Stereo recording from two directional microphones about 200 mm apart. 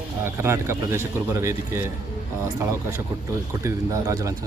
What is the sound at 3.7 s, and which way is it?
Speech, 15° right (ahead or behind).